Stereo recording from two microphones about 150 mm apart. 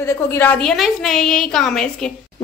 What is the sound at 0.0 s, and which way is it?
Speech, 15° left (ahead or behind).